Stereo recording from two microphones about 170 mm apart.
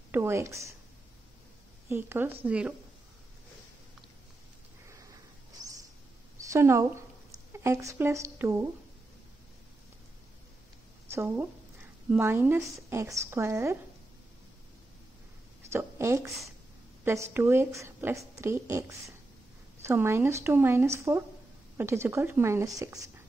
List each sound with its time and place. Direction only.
0.1 s speech: 15° right (ahead or behind)
1.9 s speech: 15° right (ahead or behind)
4.8 s a sound: 20° right (ahead or behind)
6.5 s speech: 15° right (ahead or behind)
11.1 s a woman's voice: 15° right (ahead or behind)
15.7 s speech: 15° right (ahead or behind)